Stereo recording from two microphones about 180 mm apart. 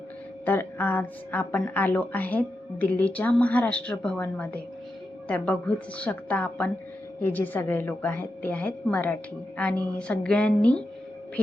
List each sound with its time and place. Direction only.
0.4 s a woman's voice: 10° left (ahead or behind)